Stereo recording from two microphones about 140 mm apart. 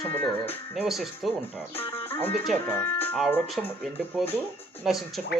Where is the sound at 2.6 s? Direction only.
15° left (ahead or behind).